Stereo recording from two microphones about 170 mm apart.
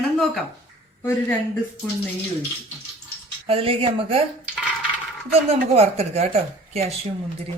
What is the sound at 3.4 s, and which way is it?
Speech, 35° right (ahead or behind).